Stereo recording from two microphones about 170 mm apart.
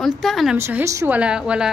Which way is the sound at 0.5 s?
15° right (ahead or behind).